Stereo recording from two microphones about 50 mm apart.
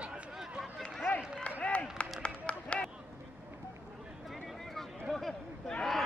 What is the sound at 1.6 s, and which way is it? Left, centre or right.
Clapping, left.